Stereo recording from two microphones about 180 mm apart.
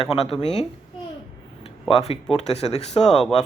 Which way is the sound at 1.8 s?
35° left (ahead or behind).